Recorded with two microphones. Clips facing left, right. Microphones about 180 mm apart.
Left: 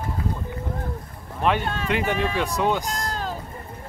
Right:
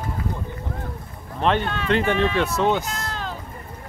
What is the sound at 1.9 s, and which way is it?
Speech, 10° left (ahead or behind).